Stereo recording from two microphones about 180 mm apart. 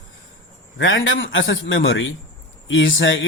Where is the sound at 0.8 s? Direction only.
90° left.